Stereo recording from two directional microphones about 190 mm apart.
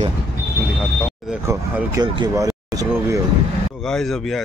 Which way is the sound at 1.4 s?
15° right (ahead or behind).